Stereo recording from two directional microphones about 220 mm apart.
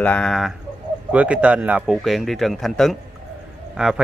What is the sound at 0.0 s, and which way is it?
Speech, 5° left (ahead or behind).